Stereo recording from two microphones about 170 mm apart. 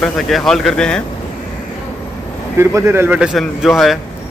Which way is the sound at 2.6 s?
15° right (ahead or behind).